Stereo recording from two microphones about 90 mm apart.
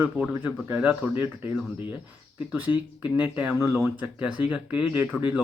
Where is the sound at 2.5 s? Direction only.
20° right (ahead or behind).